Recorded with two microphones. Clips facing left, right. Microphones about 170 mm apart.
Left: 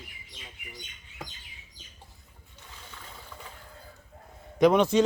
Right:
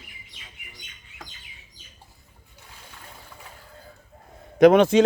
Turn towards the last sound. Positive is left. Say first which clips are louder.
# right 6 dB
turn(degrees=-90)